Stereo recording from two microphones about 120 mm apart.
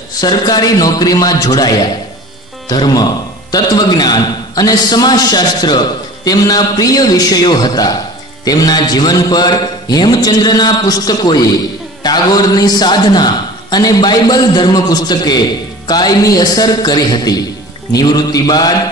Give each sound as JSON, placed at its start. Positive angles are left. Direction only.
{"t": 0.2, "sound": "a man's voice", "side_deg": 35}